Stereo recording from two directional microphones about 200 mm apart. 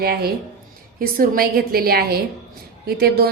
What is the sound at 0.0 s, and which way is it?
A woman's voice, 50° right (ahead or behind).